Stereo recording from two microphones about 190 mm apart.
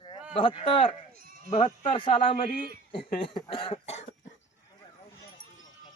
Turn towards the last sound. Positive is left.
turn(degrees=35)  # may be behind; listen again after turning